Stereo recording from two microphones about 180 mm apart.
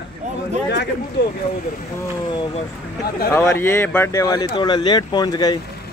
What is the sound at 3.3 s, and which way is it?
Speech, 15° left (ahead or behind).